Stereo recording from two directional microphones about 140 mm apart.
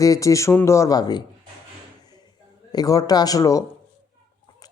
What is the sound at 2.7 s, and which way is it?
Speech, 25° left (ahead or behind).